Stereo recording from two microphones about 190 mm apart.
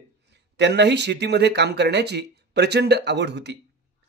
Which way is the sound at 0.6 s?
65° right (ahead or behind).